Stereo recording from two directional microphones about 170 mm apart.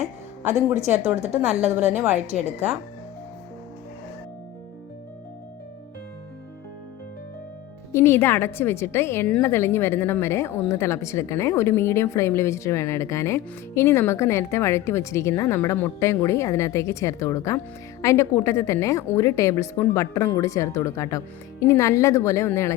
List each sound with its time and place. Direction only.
0.0 s music: 45° right (ahead or behind)
0.8 s a woman's voice: 40° right (ahead or behind)
7.9 s a woman's voice: 15° left (ahead or behind)